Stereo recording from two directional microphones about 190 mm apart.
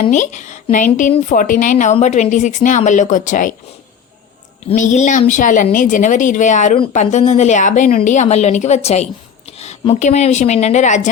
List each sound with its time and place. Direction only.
0.1 s a woman's voice: 40° left (ahead or behind)
4.7 s a woman's voice: 40° left (ahead or behind)